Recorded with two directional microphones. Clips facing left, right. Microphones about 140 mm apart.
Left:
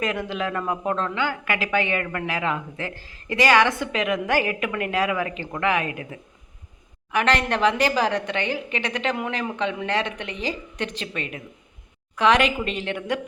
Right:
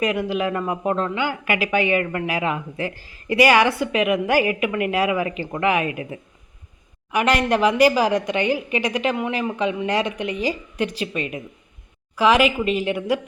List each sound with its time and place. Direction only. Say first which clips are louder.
0.0 s speech: right 4 dB; 10° right (ahead or behind)